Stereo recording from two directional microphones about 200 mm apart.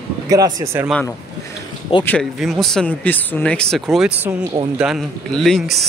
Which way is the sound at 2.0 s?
5° left (ahead or behind).